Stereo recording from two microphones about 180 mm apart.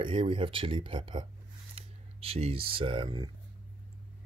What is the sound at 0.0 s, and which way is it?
Speech, 30° right (ahead or behind).